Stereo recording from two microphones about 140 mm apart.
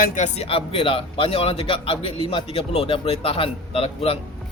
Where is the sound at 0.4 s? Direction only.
40° left (ahead or behind).